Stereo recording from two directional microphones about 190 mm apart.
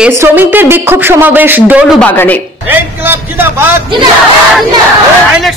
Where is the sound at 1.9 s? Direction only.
10° left (ahead or behind).